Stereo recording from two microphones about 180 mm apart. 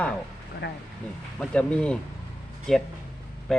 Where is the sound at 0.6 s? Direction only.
65° left (ahead or behind).